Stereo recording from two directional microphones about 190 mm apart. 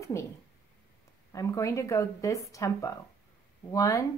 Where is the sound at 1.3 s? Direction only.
15° left (ahead or behind).